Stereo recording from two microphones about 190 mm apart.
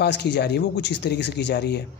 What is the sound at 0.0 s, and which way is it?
A man's voice, 60° left (ahead or behind).